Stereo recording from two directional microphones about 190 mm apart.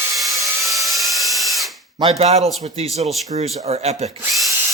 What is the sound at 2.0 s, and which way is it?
Speech, 35° right (ahead or behind).